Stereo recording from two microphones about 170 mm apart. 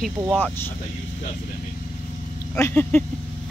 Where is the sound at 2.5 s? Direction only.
10° left (ahead or behind).